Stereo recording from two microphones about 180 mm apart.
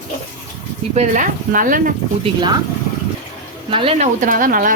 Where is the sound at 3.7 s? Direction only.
30° right (ahead or behind); by 4.7 s 50° right (ahead or behind).